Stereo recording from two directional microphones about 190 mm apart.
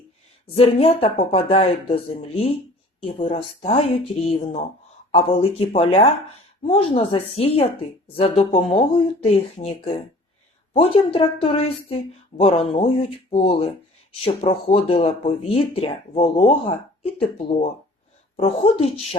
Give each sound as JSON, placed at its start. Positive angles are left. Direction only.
{"t": 0.5, "sound": "speech", "side_deg": 30}